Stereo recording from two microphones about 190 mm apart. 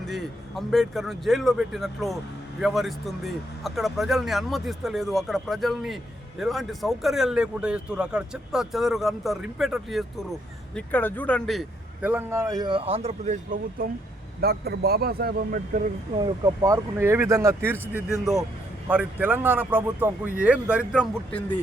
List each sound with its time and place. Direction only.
0.0 s speech: centre (ahead or behind)
10.8 s speech: 10° left (ahead or behind)
12.0 s speech: 10° right (ahead or behind); by 13.8 s 45° right (ahead or behind)
14.4 s speech: 55° right (ahead or behind)
16.1 s speech: 25° right (ahead or behind); by 21.1 s 5° right (ahead or behind)